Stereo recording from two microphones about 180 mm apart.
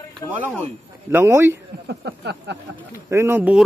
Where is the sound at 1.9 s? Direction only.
70° right (ahead or behind).